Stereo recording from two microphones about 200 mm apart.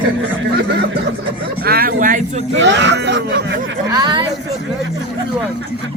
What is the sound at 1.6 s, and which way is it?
Speech, 50° right (ahead or behind).